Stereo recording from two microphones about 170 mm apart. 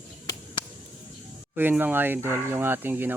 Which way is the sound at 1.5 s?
10° right (ahead or behind).